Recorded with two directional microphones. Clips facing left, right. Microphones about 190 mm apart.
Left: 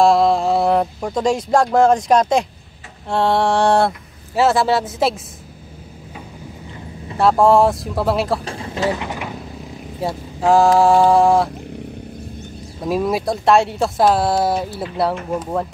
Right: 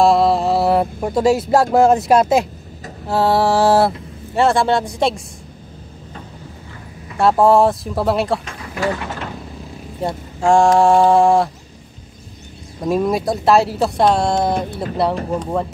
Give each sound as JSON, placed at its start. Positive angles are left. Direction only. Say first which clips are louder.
{"t": 0.0, "sound": "speech", "louder": "even", "side_deg": 0}
{"t": 7.2, "sound": "speech", "louder": "even", "side_deg": 0}
{"t": 8.5, "sound": "mechanisms", "louder": "left 1 dB", "side_deg": 25}
{"t": 9.9, "sound": "speech", "louder": "right 1 dB", "side_deg": 5}
{"t": 12.8, "sound": "speech", "louder": "right 2 dB", "side_deg": 0}
{"t": 15.3, "sound": "speech", "louder": "right 1 dB", "side_deg": -30}